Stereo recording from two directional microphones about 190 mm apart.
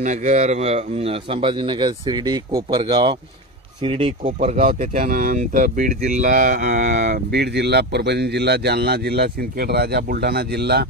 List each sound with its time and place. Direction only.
0.0 s a man's voice: 40° right (ahead or behind)
4.2 s speech: 40° right (ahead or behind)
6.9 s speech: 60° right (ahead or behind)